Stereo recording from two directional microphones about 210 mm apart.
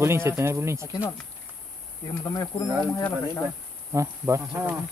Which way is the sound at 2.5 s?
25° left (ahead or behind).